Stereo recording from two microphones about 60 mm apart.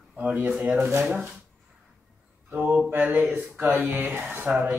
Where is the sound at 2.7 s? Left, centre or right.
Right.